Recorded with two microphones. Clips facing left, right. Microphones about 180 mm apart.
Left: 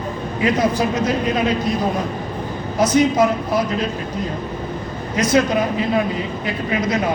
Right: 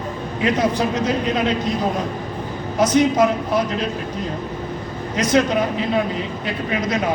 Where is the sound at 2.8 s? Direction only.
5° left (ahead or behind).